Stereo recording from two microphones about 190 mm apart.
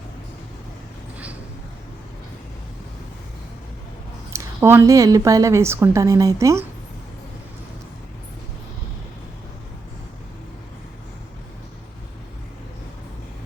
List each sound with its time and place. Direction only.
4.3 s a woman's voice: 15° right (ahead or behind)